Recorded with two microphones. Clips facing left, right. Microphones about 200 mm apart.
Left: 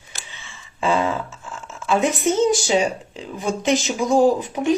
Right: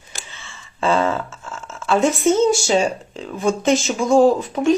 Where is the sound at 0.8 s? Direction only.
15° left (ahead or behind).